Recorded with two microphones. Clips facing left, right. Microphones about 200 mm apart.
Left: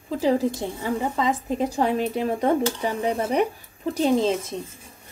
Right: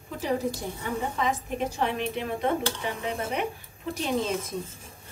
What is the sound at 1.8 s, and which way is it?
Speech, 35° left (ahead or behind).